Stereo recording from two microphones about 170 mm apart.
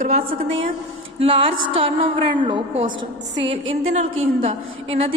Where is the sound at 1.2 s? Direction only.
30° right (ahead or behind).